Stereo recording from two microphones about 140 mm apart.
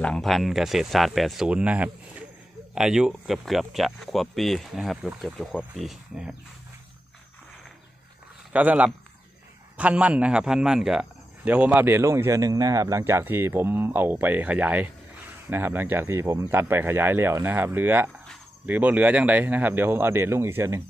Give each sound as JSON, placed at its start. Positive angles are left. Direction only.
{"t": 0.0, "sound": "speech", "side_deg": 5}
{"t": 8.5, "sound": "speech", "side_deg": -10}